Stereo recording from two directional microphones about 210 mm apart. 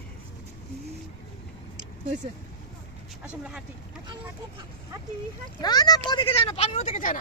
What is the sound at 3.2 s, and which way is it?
Speech, 5° right (ahead or behind).